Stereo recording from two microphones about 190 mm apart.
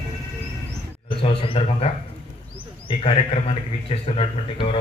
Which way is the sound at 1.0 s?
30° left (ahead or behind).